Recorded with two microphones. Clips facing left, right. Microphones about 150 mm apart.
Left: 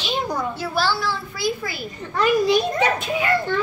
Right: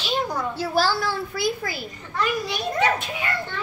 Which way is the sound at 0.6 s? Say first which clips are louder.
Right 4 dB; 40° right (ahead or behind).